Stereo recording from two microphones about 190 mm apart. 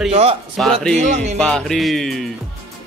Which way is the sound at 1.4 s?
5° left (ahead or behind).